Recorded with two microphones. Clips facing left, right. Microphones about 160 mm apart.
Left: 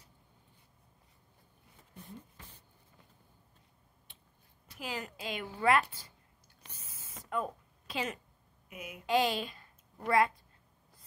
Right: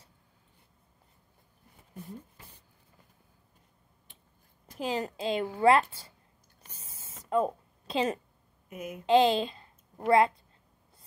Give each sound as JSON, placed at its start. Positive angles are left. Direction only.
{"t": 4.7, "sound": "a woman's voice", "side_deg": -30}
{"t": 6.8, "sound": "a sound", "side_deg": -30}
{"t": 8.6, "sound": "a woman's voice", "side_deg": -45}
{"t": 9.0, "sound": "a child's voice", "side_deg": -25}